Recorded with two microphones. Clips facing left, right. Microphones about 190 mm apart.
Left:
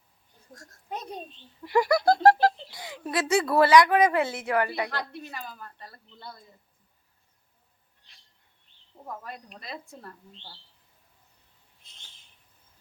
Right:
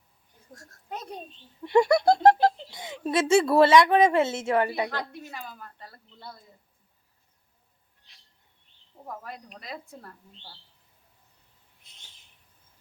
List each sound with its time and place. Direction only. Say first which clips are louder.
0.5 s a sound: left 1 dB; 5° right (ahead or behind)
1.6 s a woman's voice: right 2 dB; 25° right (ahead or behind)
5.5 s speech: left 1 dB; centre (ahead or behind)
9.2 s a woman's voice: even; 10° right (ahead or behind)